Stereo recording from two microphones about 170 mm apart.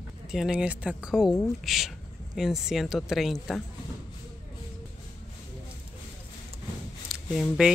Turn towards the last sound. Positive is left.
turn(degrees=0)  # may be behind; listen again after turning